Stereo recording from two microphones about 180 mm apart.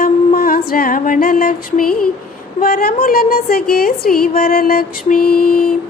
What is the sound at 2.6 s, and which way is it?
A woman's voice, 55° left (ahead or behind).